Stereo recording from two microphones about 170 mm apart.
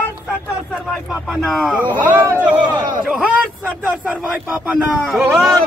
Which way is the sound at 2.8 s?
25° right (ahead or behind).